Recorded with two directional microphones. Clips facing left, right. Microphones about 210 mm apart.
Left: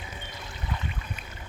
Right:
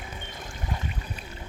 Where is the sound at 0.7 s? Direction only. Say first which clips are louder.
Right 1 dB; 45° right (ahead or behind).